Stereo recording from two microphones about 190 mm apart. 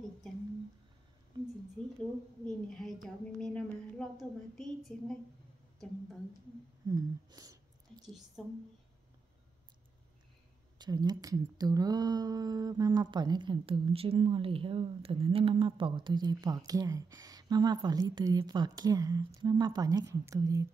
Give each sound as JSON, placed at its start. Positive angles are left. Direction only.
{"t": 2.0, "sound": "a woman's voice", "side_deg": 0}
{"t": 6.9, "sound": "a sound", "side_deg": -20}
{"t": 8.4, "sound": "a woman's voice", "side_deg": 0}
{"t": 10.8, "sound": "speech", "side_deg": -20}